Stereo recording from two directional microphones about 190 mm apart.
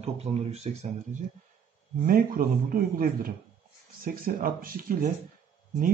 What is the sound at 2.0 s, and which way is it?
Speech, 50° right (ahead or behind).